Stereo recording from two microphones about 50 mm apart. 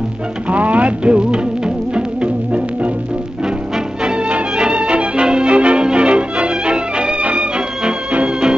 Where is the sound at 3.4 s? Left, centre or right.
Centre.